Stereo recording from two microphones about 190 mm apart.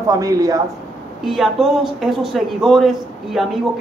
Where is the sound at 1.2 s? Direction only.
Centre (ahead or behind).